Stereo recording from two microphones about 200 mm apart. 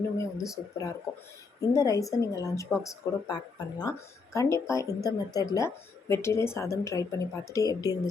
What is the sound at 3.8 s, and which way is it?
A woman's voice, 15° left (ahead or behind).